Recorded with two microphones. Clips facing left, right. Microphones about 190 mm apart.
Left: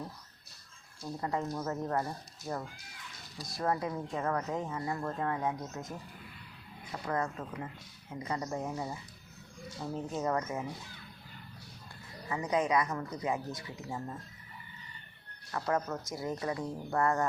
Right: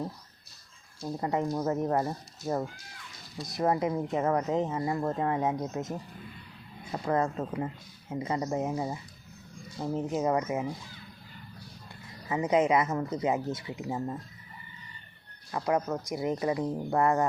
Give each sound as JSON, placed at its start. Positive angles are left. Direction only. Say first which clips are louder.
{"t": 1.2, "sound": "speech", "louder": "right 6 dB", "side_deg": -20}
{"t": 7.1, "sound": "speech", "louder": "right 6 dB", "side_deg": -25}
{"t": 12.3, "sound": "speech", "louder": "right 5 dB", "side_deg": -20}
{"t": 15.5, "sound": "speech", "louder": "right 4 dB", "side_deg": -15}